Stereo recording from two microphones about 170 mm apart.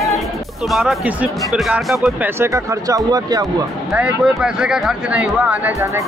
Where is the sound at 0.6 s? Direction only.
5° right (ahead or behind).